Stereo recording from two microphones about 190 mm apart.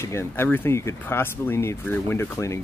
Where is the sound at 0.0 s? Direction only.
15° left (ahead or behind).